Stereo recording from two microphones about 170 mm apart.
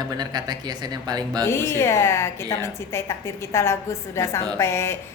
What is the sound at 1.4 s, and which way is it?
A woman's voice, 15° left (ahead or behind).